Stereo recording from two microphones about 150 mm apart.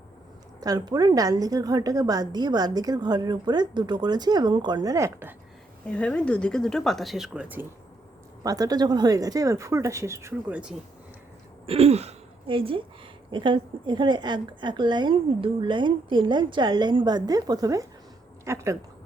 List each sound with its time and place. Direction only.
0.6 s a woman's voice: 25° right (ahead or behind)
5.8 s speech: 5° left (ahead or behind); by 7.7 s 10° right (ahead or behind)
8.4 s a woman's voice: 25° right (ahead or behind)
11.6 s a woman's voice: 40° right (ahead or behind); by 18.8 s 20° right (ahead or behind)